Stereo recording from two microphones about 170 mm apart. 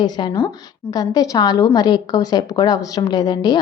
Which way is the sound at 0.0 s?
25° left (ahead or behind).